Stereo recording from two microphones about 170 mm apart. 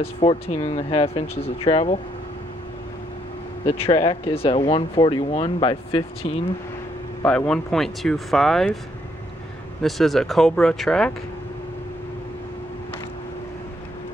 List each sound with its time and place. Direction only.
0.0 s speech: 35° left (ahead or behind)
3.6 s speech: 35° left (ahead or behind)
7.2 s speech: 5° left (ahead or behind)
9.8 s speech: centre (ahead or behind)